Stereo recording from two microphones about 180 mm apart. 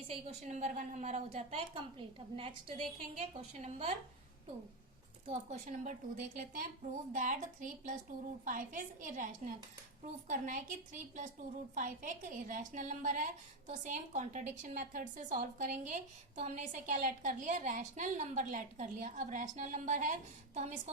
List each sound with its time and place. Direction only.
0.1 s a woman's voice: 40° right (ahead or behind)
5.2 s a woman's voice: 40° right (ahead or behind)